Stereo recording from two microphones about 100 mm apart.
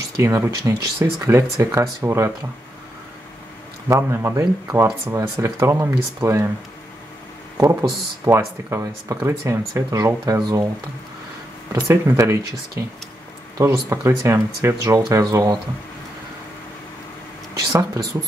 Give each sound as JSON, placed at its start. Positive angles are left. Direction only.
{"t": 0.2, "sound": "speech", "side_deg": -30}
{"t": 3.9, "sound": "speech", "side_deg": -30}
{"t": 8.3, "sound": "speech", "side_deg": -25}
{"t": 11.7, "sound": "speech", "side_deg": -30}
{"t": 17.6, "sound": "speech", "side_deg": -35}